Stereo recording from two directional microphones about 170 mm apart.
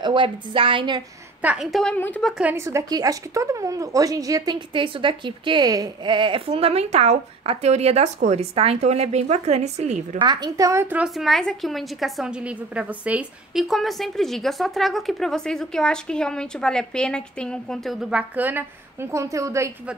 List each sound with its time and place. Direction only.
0.0 s a woman's voice: 30° right (ahead or behind)
1.4 s a woman's voice: 5° right (ahead or behind)
2.3 s speech: 10° right (ahead or behind); by 10.0 s 40° right (ahead or behind)
10.1 s a woman's voice: 25° right (ahead or behind)